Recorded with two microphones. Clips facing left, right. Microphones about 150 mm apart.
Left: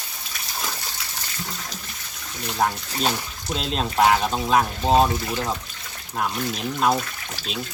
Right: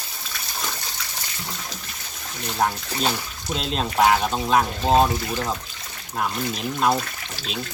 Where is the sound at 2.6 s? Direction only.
Centre (ahead or behind).